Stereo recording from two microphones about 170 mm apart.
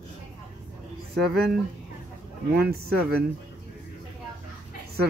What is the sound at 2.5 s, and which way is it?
Speech, 65° right (ahead or behind).